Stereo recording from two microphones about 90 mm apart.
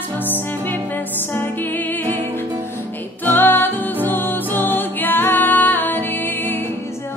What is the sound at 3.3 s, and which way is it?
Music, 20° left (ahead or behind).